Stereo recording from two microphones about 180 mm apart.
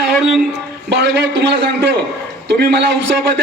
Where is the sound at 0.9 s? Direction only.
65° right (ahead or behind).